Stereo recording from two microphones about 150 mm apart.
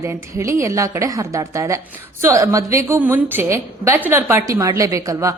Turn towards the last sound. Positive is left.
turn(degrees=-20)  # may be behind; listen again after turning